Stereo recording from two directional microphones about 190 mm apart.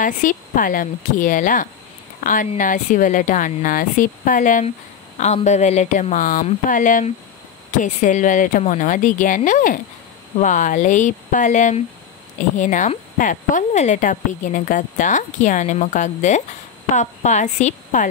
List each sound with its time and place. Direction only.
0.0 s speech: 45° left (ahead or behind)